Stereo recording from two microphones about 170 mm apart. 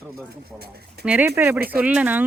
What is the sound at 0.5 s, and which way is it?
Speech, 70° right (ahead or behind).